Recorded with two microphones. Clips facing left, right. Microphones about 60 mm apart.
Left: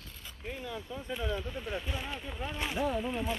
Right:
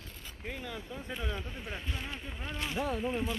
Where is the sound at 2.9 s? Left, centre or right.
Centre.